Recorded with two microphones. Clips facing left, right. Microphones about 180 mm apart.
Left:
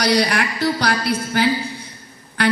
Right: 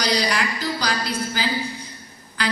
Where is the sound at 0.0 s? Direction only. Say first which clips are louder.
Left 5 dB; 60° left (ahead or behind).